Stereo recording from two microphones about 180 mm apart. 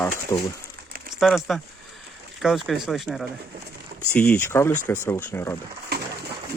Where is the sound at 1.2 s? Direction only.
Centre (ahead or behind).